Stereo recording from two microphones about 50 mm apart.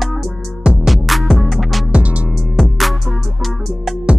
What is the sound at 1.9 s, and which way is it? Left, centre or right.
Music, right.